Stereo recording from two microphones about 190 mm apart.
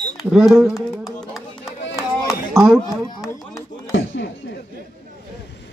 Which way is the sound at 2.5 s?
Centre (ahead or behind).